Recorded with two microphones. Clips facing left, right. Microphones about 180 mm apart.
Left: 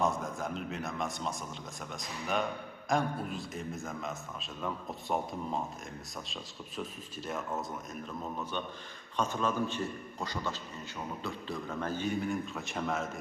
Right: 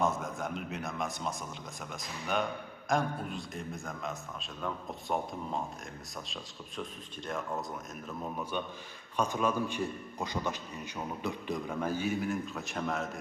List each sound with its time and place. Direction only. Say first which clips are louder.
0.0 s a man's voice: even; centre (ahead or behind)
7.3 s a man's voice: even; 5° left (ahead or behind)
8.2 s a man's voice: right 3 dB; 10° right (ahead or behind)